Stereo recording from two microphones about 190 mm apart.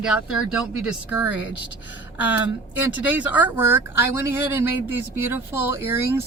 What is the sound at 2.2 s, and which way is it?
Speech, 10° right (ahead or behind).